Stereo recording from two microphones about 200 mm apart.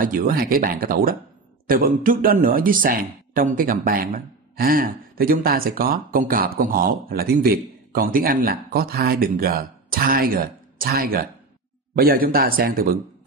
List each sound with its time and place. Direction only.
0.0 s speech: 45° right (ahead or behind)